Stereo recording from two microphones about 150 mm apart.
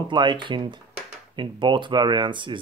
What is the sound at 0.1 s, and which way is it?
Speech, 30° right (ahead or behind).